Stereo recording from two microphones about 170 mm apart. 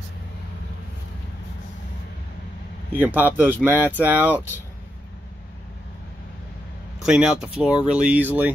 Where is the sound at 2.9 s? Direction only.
10° right (ahead or behind).